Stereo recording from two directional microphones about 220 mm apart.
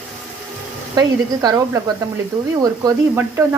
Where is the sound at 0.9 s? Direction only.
15° right (ahead or behind).